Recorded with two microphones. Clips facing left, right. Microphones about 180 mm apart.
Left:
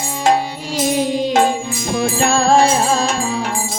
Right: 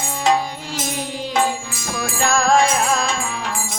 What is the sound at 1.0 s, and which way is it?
Music, 20° left (ahead or behind).